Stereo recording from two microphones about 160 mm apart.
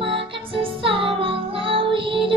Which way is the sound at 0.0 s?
35° right (ahead or behind).